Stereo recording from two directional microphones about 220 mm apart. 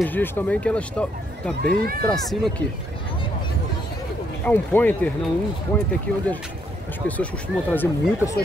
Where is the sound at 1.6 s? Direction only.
45° right (ahead or behind).